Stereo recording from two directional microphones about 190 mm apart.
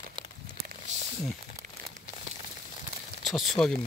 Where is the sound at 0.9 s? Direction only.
40° right (ahead or behind).